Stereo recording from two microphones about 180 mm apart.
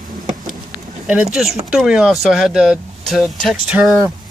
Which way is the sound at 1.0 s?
Centre (ahead or behind).